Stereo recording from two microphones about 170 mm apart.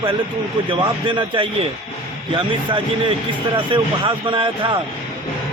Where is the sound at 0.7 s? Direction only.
30° right (ahead or behind).